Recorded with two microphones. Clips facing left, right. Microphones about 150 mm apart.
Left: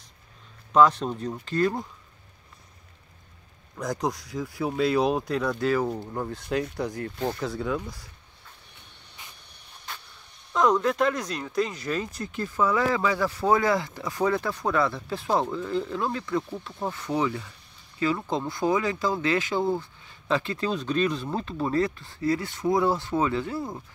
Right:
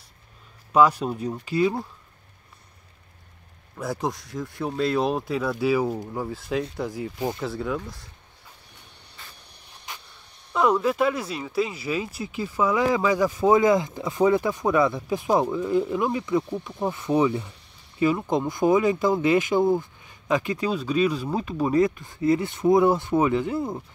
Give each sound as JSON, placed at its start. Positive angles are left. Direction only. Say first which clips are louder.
{"t": 0.7, "sound": "speech", "louder": "right 1 dB", "side_deg": -10}
{"t": 3.7, "sound": "speech", "louder": "even", "side_deg": -5}
{"t": 7.5, "sound": "speech", "louder": "even", "side_deg": 0}
{"t": 9.2, "sound": "a sound", "louder": "right 1 dB", "side_deg": 15}
{"t": 10.5, "sound": "speech", "louder": "right 1 dB", "side_deg": -5}